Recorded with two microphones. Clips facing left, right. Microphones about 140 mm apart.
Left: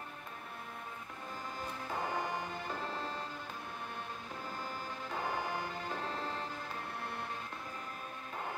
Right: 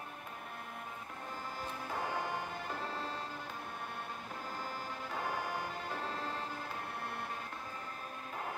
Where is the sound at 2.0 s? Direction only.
15° left (ahead or behind).